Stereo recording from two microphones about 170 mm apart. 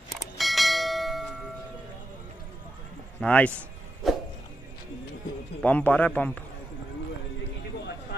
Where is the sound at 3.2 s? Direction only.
5° left (ahead or behind).